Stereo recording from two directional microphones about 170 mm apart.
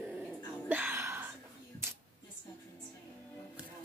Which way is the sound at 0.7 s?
10° right (ahead or behind).